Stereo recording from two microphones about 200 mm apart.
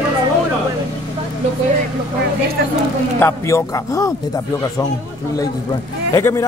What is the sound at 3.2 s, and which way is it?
Speech, 15° left (ahead or behind).